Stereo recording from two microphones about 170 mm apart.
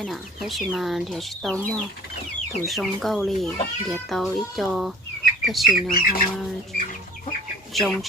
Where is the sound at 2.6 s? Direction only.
Centre (ahead or behind).